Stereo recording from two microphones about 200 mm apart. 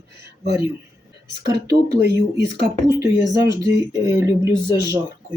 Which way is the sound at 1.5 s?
55° right (ahead or behind).